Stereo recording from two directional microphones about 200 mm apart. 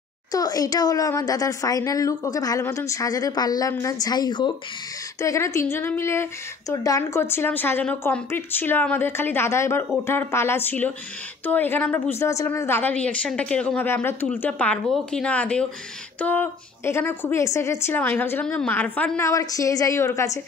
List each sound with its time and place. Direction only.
0.3 s a woman's voice: 20° left (ahead or behind)